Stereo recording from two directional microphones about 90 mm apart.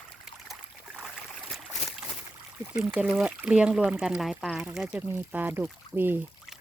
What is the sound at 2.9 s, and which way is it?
Speech, 10° right (ahead or behind).